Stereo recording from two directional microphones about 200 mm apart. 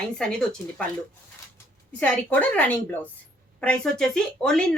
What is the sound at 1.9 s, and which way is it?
A woman's voice, 5° left (ahead or behind).